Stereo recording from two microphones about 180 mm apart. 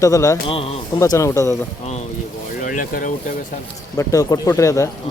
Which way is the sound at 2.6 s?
45° left (ahead or behind).